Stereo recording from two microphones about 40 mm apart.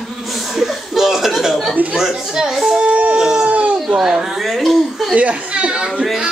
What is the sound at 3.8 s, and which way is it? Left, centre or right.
Speech, centre.